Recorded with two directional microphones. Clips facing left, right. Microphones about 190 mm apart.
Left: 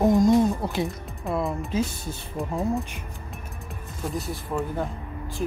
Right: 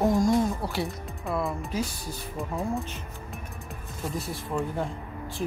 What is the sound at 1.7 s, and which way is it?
Speech, 25° left (ahead or behind).